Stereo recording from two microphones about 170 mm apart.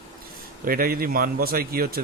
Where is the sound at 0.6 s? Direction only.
60° right (ahead or behind).